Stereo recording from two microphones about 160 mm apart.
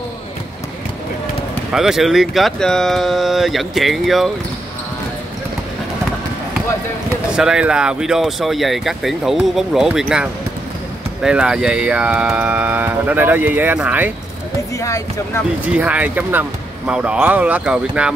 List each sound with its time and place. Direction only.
1.7 s speech: centre (ahead or behind)
7.3 s speech: 5° right (ahead or behind)
14.8 s speech: 20° left (ahead or behind)
15.6 s speech: 10° right (ahead or behind)